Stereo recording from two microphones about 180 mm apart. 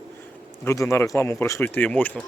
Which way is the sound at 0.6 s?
15° left (ahead or behind).